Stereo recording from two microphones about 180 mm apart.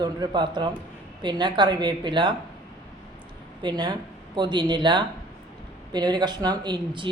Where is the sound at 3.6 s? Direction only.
25° right (ahead or behind).